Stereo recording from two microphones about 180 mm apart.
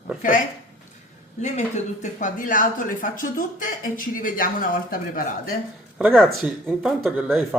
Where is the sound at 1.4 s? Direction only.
40° left (ahead or behind).